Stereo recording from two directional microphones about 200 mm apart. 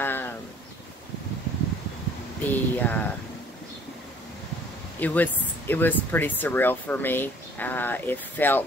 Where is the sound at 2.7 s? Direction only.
10° left (ahead or behind).